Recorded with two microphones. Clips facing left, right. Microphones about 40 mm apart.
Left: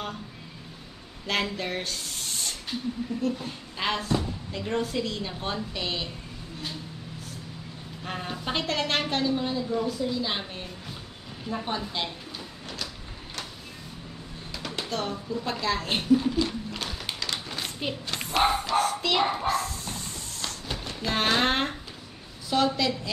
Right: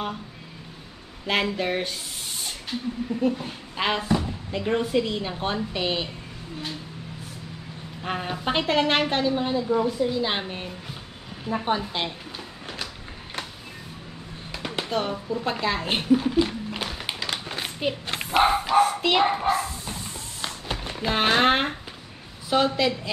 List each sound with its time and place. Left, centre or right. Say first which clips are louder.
1.2 s a woman's voice: right 4 dB; centre
8.0 s a woman's voice: right 5 dB; centre
14.5 s a sound: right 5 dB; right
22.5 s a woman's voice: right 3 dB; centre